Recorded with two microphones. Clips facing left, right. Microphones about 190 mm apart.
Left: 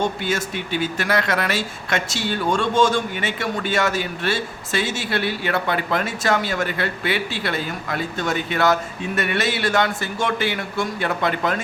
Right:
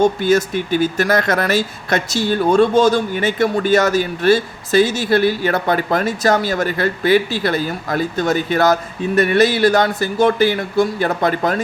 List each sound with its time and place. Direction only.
0.0 s speech: 40° right (ahead or behind)